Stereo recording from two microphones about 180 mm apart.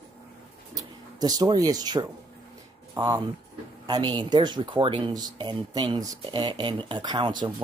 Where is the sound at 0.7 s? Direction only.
20° right (ahead or behind).